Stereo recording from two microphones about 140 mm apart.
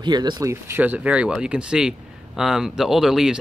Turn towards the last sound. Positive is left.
turn(degrees=-5)  # may be behind; listen again after turning